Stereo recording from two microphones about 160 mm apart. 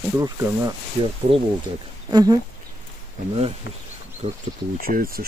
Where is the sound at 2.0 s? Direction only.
25° right (ahead or behind).